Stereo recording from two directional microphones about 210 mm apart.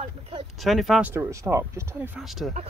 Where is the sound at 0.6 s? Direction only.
Centre (ahead or behind).